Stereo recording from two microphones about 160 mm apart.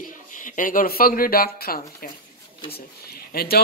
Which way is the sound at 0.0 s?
55° left (ahead or behind).